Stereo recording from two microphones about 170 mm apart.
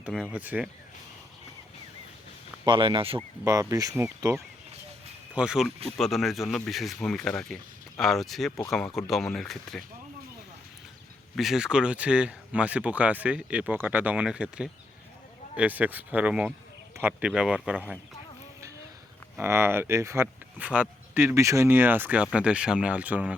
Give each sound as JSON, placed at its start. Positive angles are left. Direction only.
{"t": 0.0, "sound": "speech", "side_deg": -5}
{"t": 2.6, "sound": "speech", "side_deg": -30}
{"t": 3.4, "sound": "speech", "side_deg": -20}
{"t": 5.3, "sound": "speech", "side_deg": -5}
{"t": 11.3, "sound": "speech", "side_deg": 0}
{"t": 19.4, "sound": "speech", "side_deg": -15}